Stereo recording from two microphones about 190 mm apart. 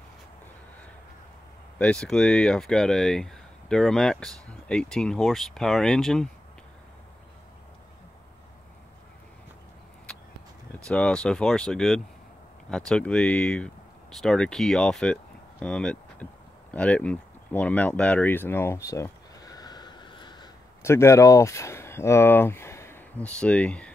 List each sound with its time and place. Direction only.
1.8 s speech: 5° left (ahead or behind)
10.9 s speech: 5° left (ahead or behind)